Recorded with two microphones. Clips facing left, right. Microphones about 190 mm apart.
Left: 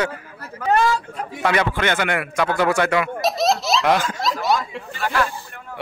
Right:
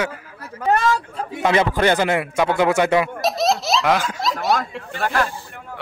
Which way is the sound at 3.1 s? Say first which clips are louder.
Even; centre (ahead or behind).